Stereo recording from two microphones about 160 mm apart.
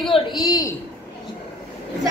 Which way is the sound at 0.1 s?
25° left (ahead or behind).